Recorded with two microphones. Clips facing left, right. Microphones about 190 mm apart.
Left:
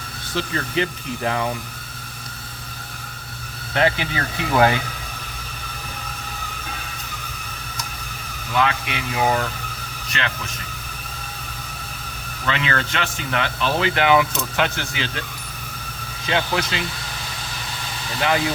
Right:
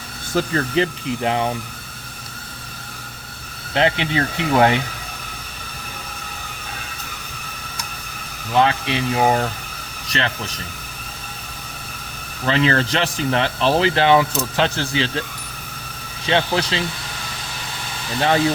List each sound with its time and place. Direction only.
0.3 s speech: 40° right (ahead or behind)
1.2 s speech: 25° right (ahead or behind)
3.8 s speech: 25° right (ahead or behind)
8.5 s speech: 30° right (ahead or behind)
12.5 s speech: 35° right (ahead or behind)
16.2 s speech: 30° right (ahead or behind)